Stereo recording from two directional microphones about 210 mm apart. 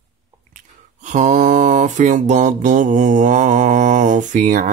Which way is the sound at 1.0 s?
35° right (ahead or behind).